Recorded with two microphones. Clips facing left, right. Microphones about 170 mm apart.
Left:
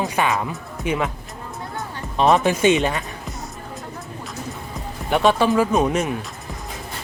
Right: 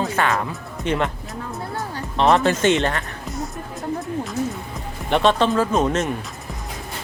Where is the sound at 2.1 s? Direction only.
15° left (ahead or behind).